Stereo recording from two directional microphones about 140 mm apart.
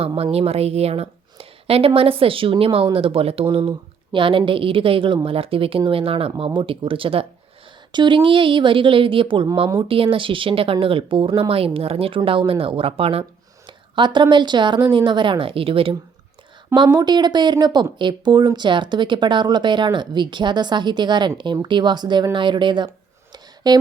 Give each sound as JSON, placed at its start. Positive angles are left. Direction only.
{"t": 0.2, "sound": "a woman's voice", "side_deg": -45}
{"t": 16.7, "sound": "speech", "side_deg": -30}
{"t": 23.3, "sound": "a sound", "side_deg": -30}